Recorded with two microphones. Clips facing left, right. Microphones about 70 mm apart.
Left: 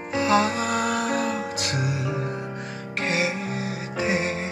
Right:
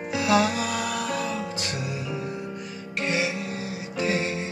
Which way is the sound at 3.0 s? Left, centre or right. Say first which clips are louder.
Left 1 dB; left.